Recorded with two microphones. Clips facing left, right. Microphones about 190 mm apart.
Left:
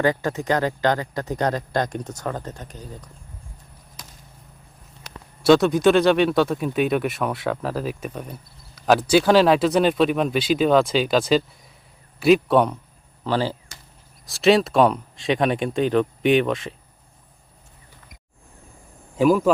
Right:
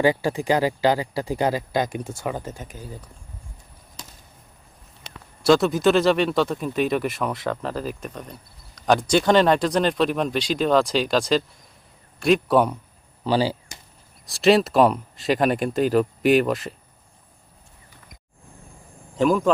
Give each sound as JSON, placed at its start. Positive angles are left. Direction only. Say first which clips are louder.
{"t": 0.0, "sound": "speech", "louder": "right 1 dB", "side_deg": -10}
{"t": 5.4, "sound": "speech", "louder": "left 2 dB", "side_deg": 0}
{"t": 13.2, "sound": "speech", "louder": "right 2 dB", "side_deg": -15}
{"t": 14.3, "sound": "speech", "louder": "even", "side_deg": 0}
{"t": 19.1, "sound": "speech", "louder": "left 2 dB", "side_deg": 5}